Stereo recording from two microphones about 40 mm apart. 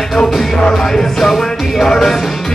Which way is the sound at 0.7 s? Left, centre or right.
Centre.